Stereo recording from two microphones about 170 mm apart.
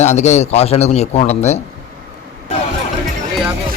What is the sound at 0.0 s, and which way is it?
A man's voice, 40° left (ahead or behind).